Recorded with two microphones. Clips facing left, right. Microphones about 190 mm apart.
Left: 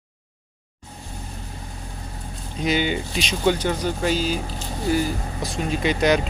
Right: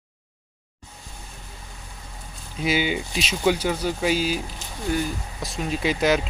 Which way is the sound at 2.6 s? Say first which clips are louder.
Left 1 dB; 5° right (ahead or behind).